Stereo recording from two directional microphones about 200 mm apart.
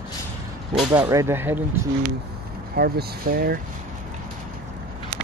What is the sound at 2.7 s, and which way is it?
Speech, 50° right (ahead or behind).